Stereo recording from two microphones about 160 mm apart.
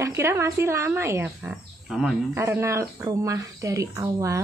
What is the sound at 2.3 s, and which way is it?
Speech, 15° right (ahead or behind).